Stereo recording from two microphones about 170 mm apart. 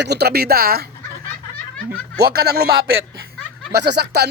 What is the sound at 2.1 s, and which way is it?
Speech, 70° right (ahead or behind).